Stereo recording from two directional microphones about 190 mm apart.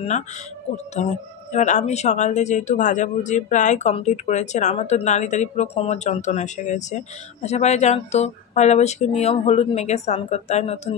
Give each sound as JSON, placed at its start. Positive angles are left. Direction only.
{"t": 0.9, "sound": "speech", "side_deg": 40}